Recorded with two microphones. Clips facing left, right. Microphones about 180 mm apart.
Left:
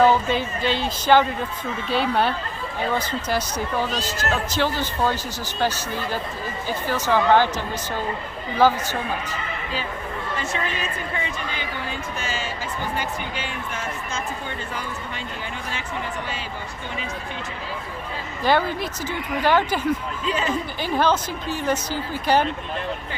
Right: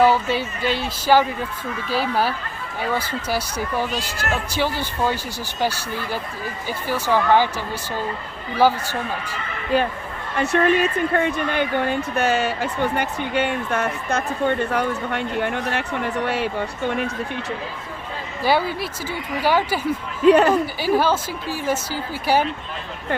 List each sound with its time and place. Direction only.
0.0 s speech: 10° right (ahead or behind)
8.5 s speech: 10° right (ahead or behind)
9.7 s a woman's voice: 60° right (ahead or behind)
18.4 s speech: 10° right (ahead or behind)
20.2 s a woman's voice: 65° right (ahead or behind)
20.8 s speech: 5° right (ahead or behind)